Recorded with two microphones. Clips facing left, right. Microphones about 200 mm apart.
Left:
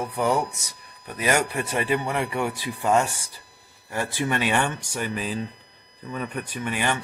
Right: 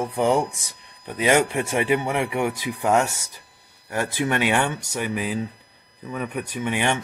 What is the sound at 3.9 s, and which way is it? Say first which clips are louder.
Speech: right 2 dB; 15° right (ahead or behind).